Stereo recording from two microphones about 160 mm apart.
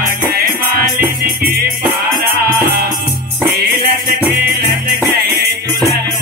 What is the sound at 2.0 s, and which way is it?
Music, 80° right.